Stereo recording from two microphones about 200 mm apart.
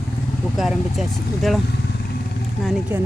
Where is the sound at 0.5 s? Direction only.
Centre (ahead or behind).